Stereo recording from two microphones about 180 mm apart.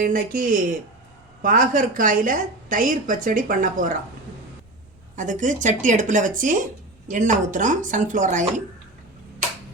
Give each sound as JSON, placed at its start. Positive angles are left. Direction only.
{"t": 0.0, "sound": "a woman's voice", "side_deg": -50}
{"t": 5.1, "sound": "a woman's voice", "side_deg": -45}